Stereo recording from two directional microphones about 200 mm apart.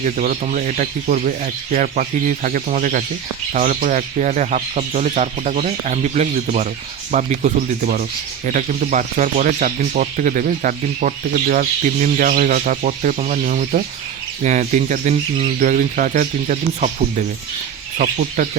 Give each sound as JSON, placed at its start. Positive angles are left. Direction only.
{"t": 0.0, "sound": "speech", "side_deg": -40}